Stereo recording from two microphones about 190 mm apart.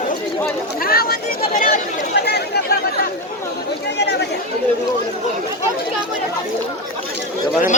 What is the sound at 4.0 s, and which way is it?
Chatter, 60° left (ahead or behind).